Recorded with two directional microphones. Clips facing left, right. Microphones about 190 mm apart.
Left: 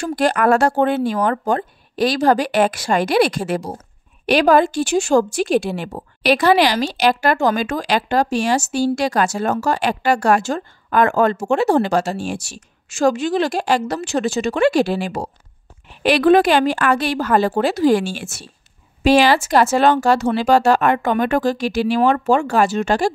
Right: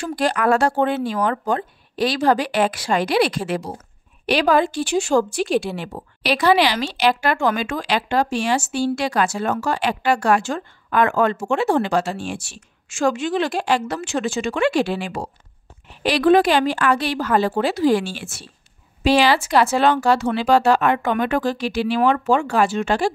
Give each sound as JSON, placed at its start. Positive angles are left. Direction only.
{"t": 0.0, "sound": "a woman's voice", "side_deg": 50}
{"t": 16.0, "sound": "speech", "side_deg": 55}